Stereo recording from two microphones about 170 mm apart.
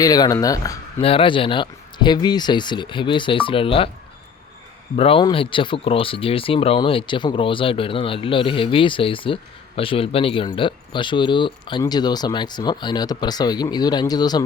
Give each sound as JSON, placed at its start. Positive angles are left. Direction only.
{"t": 0.0, "sound": "speech", "side_deg": 20}
{"t": 1.0, "sound": "speech", "side_deg": 30}
{"t": 4.9, "sound": "speech", "side_deg": 35}